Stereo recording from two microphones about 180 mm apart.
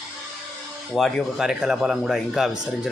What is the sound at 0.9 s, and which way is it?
A man's voice, centre (ahead or behind).